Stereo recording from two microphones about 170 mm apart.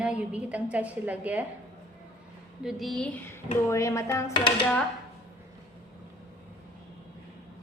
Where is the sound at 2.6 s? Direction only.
Centre (ahead or behind); by 4.7 s 25° left (ahead or behind).